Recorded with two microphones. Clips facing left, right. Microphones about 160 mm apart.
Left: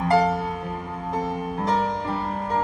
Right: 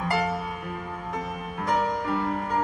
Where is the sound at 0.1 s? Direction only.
30° left (ahead or behind).